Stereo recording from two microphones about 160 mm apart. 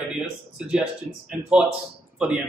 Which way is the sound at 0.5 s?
5° right (ahead or behind).